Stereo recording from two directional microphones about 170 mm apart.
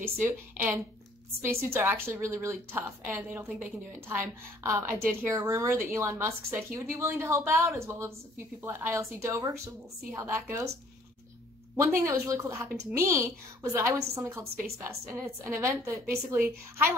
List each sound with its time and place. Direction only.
0.0 s a woman's voice: 10° right (ahead or behind)
4.6 s a woman's voice: 15° right (ahead or behind)
11.8 s a woman's voice: 15° right (ahead or behind)